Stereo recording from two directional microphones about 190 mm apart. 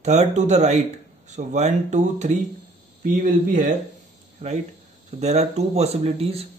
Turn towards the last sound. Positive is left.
turn(degrees=-30)  # may be behind; listen again after turning